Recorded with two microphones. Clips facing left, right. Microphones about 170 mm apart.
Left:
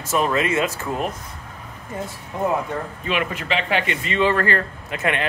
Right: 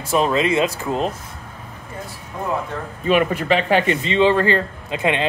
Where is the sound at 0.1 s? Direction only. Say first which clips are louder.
Right 3 dB; 20° right (ahead or behind).